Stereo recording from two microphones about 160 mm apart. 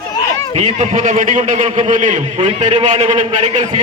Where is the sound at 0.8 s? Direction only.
50° right (ahead or behind).